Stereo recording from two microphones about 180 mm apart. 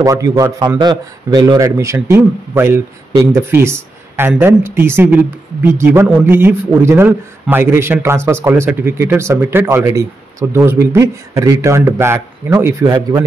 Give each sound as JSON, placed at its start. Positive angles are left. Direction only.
{"t": 0.0, "sound": "a man's voice", "side_deg": -20}